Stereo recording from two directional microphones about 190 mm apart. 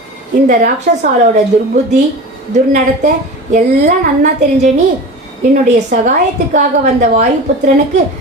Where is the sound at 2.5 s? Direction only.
40° right (ahead or behind).